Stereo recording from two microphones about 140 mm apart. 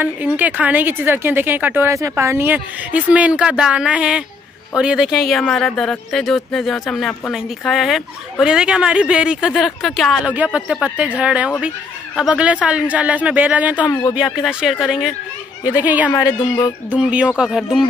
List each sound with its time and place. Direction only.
0.0 s speech: 10° right (ahead or behind)
16.1 s speech: 30° left (ahead or behind)
16.9 s speech: 10° right (ahead or behind)